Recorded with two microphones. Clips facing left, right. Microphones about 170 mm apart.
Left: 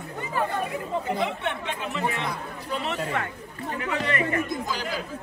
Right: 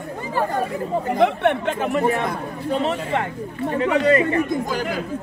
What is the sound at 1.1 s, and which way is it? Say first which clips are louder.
Speech: right 10 dB; 60° right (ahead or behind).